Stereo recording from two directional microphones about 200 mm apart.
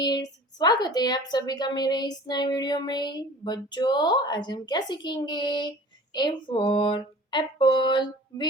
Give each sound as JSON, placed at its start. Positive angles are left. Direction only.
{"t": 0.0, "sound": "a woman's voice", "side_deg": 20}